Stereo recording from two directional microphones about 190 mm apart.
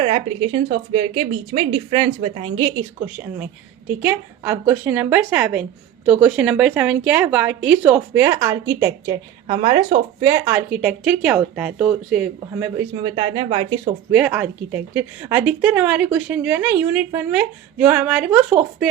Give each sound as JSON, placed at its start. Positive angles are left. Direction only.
{"t": 0.0, "sound": "a woman's voice", "side_deg": -30}
{"t": 4.0, "sound": "a woman's voice", "side_deg": -10}
{"t": 9.5, "sound": "speech", "side_deg": -30}
{"t": 10.2, "sound": "speech", "side_deg": -15}
{"t": 13.1, "sound": "a woman's voice", "side_deg": -25}
{"t": 14.1, "sound": "speech", "side_deg": -5}